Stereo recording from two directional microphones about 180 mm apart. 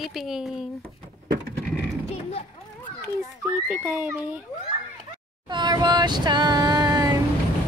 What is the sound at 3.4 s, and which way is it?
A child's voice, 10° right (ahead or behind).